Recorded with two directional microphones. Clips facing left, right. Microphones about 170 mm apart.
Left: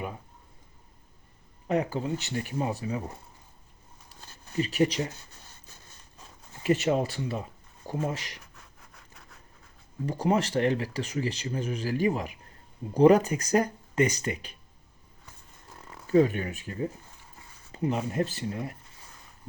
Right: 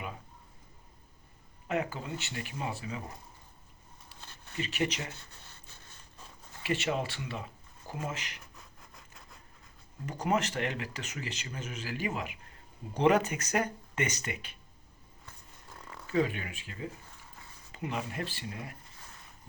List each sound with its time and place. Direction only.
1.6 s speech: 35° left (ahead or behind)
4.3 s speech: 40° left (ahead or behind)
6.6 s speech: 40° left (ahead or behind)
10.1 s speech: 30° left (ahead or behind)
16.0 s speech: 40° left (ahead or behind)